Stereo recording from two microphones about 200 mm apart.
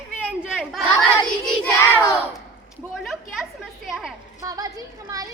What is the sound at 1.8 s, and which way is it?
Crowd, 15° left (ahead or behind).